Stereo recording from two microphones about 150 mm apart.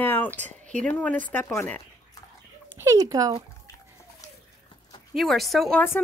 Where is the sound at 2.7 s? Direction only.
20° right (ahead or behind).